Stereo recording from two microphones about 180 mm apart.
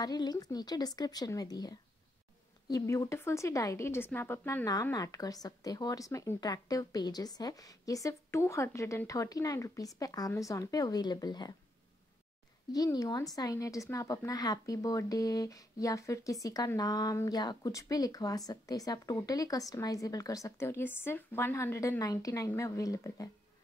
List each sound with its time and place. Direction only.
0.0 s a woman's voice: 20° left (ahead or behind)
12.7 s a woman's voice: 20° left (ahead or behind)